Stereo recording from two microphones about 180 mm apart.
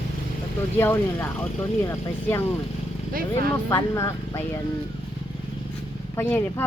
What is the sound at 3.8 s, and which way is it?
Speech, 15° left (ahead or behind).